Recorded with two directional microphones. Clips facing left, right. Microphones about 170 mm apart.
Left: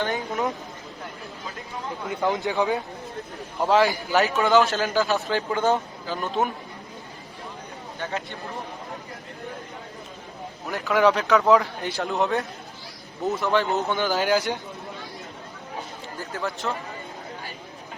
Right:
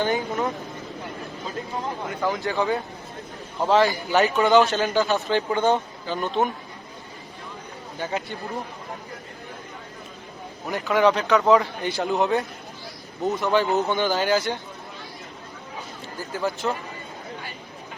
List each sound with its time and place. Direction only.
0.0 s speech: centre (ahead or behind)
2.2 s speech: 20° left (ahead or behind)
3.6 s speech: 5° left (ahead or behind)
10.7 s speech: centre (ahead or behind)
16.1 s speech: centre (ahead or behind)